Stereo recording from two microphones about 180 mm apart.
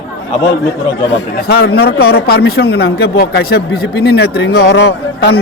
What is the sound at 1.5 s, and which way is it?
A man's voice, 60° left (ahead or behind).